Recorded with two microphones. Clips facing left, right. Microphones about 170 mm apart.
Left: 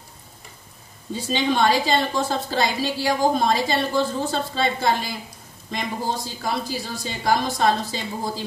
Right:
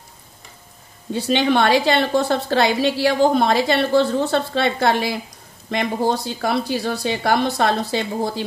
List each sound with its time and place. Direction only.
1.1 s a woman's voice: 65° right (ahead or behind)